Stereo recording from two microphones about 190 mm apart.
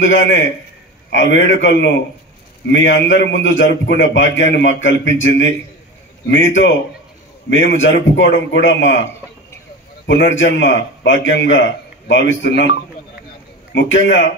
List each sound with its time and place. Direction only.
0.0 s a man's voice: 75° left (ahead or behind)
10.0 s a man's voice: 70° left (ahead or behind)
13.7 s a man's voice: 75° left (ahead or behind)